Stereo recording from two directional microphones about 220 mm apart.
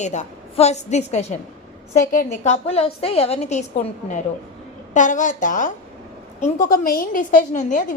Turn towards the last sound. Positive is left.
turn(degrees=35)  # may be behind; listen again after turning